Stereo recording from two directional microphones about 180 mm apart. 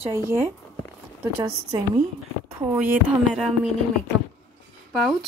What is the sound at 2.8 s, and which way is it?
Speech, 5° right (ahead or behind).